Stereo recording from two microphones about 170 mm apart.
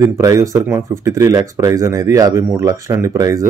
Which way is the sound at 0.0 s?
20° right (ahead or behind).